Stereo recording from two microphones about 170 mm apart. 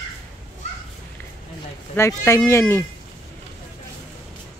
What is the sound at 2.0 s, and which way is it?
Speech, 20° left (ahead or behind).